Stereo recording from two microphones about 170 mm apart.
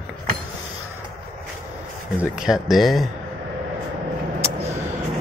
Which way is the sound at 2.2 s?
5° right (ahead or behind).